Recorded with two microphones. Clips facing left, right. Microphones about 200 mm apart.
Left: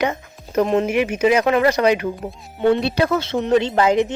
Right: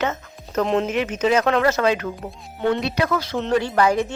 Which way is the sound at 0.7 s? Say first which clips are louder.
Left 3 dB; 5° left (ahead or behind).